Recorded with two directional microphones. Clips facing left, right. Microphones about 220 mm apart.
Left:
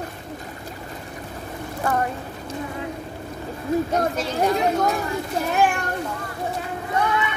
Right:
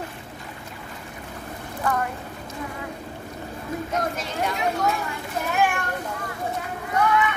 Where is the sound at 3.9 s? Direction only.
40° left (ahead or behind).